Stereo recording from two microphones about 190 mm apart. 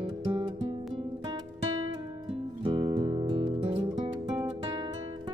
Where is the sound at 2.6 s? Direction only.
25° right (ahead or behind).